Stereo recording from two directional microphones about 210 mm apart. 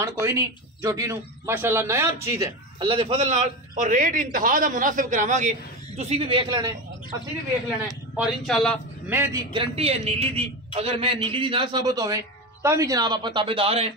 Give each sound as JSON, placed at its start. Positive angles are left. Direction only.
{"t": 0.0, "sound": "a man's voice", "side_deg": -15}
{"t": 8.2, "sound": "speech", "side_deg": 0}
{"t": 9.1, "sound": "a man's voice", "side_deg": -10}
{"t": 9.5, "sound": "a man's voice", "side_deg": -25}